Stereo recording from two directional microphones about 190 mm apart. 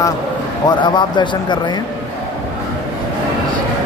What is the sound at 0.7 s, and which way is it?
Speech, 25° left (ahead or behind).